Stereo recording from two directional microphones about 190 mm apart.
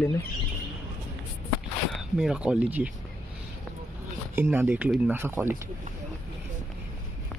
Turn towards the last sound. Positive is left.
turn(degrees=-10)  # may be behind; listen again after turning